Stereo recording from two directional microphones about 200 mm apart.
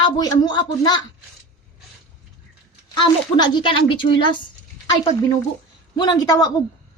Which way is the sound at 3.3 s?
25° left (ahead or behind).